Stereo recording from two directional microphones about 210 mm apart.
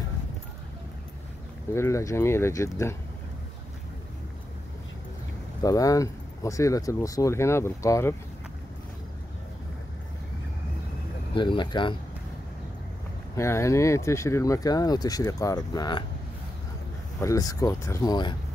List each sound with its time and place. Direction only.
1.7 s speech: 15° left (ahead or behind)
5.6 s speech: 15° left (ahead or behind)
11.3 s speech: 20° left (ahead or behind)
13.4 s speech: 15° left (ahead or behind)
17.2 s speech: 15° left (ahead or behind)